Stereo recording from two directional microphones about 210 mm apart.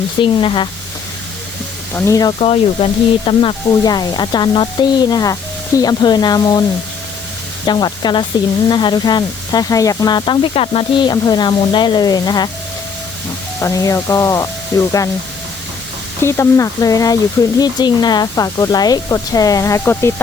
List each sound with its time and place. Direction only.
0.2 s speech: 25° left (ahead or behind)
2.0 s speech: 15° left (ahead or behind)
13.6 s speech: 15° left (ahead or behind)
16.2 s speech: 15° left (ahead or behind)